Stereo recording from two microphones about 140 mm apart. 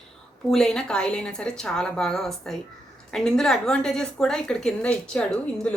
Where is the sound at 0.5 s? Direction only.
5° left (ahead or behind).